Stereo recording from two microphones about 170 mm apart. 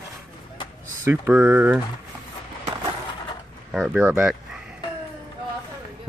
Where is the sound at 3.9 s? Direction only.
5° right (ahead or behind).